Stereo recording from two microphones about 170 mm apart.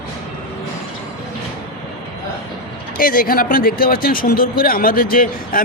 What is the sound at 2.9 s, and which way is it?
Speech, 60° left (ahead or behind).